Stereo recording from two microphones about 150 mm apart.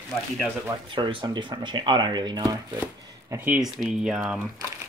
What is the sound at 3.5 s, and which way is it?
Speech, centre (ahead or behind).